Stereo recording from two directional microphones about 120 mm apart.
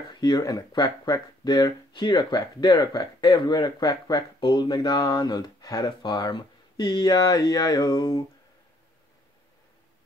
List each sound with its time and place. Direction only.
0.1 s speech: 35° left (ahead or behind)